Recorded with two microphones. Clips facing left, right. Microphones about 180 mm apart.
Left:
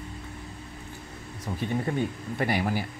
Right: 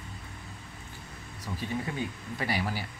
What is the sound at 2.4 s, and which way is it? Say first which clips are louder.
Speech: left 5 dB; 50° left (ahead or behind).